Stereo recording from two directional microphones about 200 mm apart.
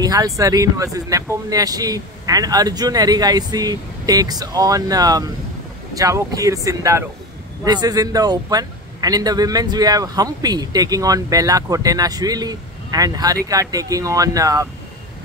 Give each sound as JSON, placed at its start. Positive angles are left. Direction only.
{"t": 0.0, "sound": "a man's voice", "side_deg": -20}